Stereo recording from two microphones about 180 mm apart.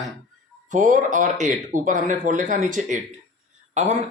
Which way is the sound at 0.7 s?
45° right (ahead or behind).